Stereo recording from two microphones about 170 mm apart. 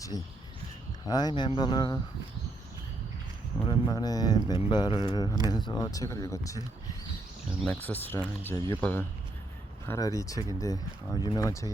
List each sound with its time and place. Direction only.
1.0 s speech: 25° left (ahead or behind)
3.7 s speech: 25° left (ahead or behind)